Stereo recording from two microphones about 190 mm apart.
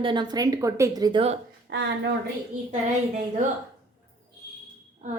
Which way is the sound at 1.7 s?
65° right (ahead or behind).